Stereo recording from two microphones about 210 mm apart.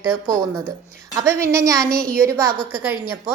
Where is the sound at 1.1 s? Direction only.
15° right (ahead or behind).